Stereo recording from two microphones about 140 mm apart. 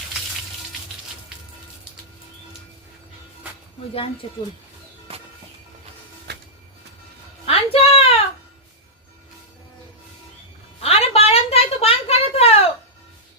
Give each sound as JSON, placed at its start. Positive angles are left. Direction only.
{"t": 3.9, "sound": "speech", "side_deg": 40}
{"t": 7.4, "sound": "music", "side_deg": 45}
{"t": 10.8, "sound": "a sound", "side_deg": 45}